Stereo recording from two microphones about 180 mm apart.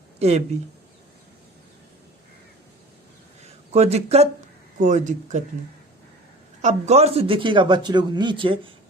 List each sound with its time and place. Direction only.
0.2 s speech: 35° right (ahead or behind)
3.4 s speech: 35° right (ahead or behind)
6.6 s a man's voice: 40° right (ahead or behind)